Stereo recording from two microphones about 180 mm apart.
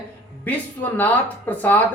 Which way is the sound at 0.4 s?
10° left (ahead or behind).